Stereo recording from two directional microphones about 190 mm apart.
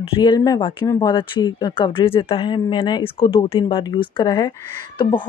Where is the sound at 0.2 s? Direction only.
20° left (ahead or behind).